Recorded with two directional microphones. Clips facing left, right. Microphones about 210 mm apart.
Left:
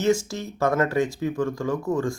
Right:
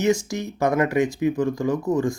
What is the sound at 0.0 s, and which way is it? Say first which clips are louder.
Speech: right 1 dB; 15° right (ahead or behind).